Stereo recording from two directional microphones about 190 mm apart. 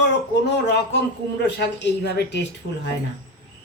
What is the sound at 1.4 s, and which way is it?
Speech, 65° left (ahead or behind).